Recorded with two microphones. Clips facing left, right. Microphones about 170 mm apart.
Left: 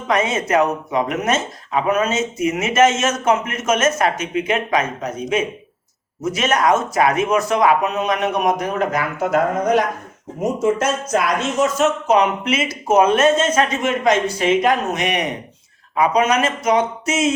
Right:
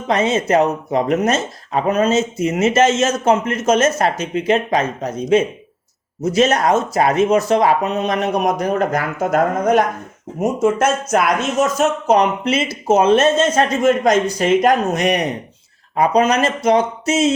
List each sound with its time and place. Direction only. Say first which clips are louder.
0.1 s speech: right 2 dB; 30° right (ahead or behind); by 11.2 s 50° right (ahead or behind)
11.6 s speech: even; 40° right (ahead or behind)